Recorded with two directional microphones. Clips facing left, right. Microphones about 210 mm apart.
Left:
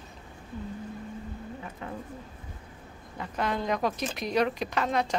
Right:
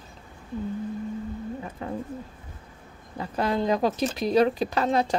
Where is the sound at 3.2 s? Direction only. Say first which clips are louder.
Right 5 dB; 35° right (ahead or behind).